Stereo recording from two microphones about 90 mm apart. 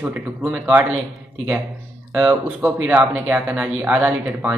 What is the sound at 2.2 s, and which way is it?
A man's voice, 20° right (ahead or behind).